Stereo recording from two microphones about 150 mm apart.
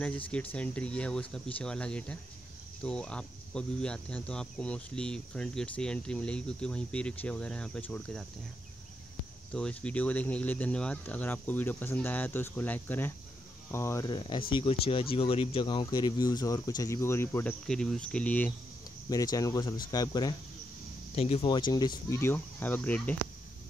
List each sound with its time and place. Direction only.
0.0 s speech: 10° left (ahead or behind)
9.5 s speech: 10° left (ahead or behind)
14.0 s speech: 30° left (ahead or behind); by 18.5 s 10° left (ahead or behind)
19.0 s speech: 25° left (ahead or behind)
21.1 s speech: 45° left (ahead or behind)
21.5 s speech: 30° left (ahead or behind)
22.2 s speech: 15° left (ahead or behind)